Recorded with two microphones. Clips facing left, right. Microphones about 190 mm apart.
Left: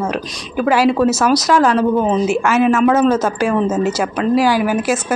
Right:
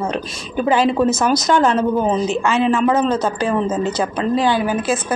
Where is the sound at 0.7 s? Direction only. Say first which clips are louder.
Left 2 dB; 5° left (ahead or behind).